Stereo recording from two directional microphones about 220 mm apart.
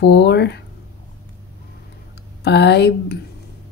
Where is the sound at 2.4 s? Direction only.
50° left (ahead or behind).